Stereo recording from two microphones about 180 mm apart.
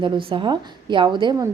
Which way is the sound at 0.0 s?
30° right (ahead or behind).